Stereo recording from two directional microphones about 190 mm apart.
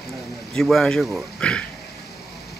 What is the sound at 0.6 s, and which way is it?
Speech, centre (ahead or behind).